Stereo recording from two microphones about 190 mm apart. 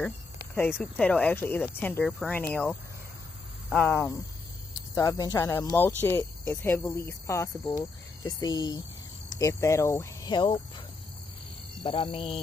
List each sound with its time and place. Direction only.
0.9 s speech: 5° left (ahead or behind); by 10.6 s 25° left (ahead or behind)
11.8 s speech: 25° left (ahead or behind)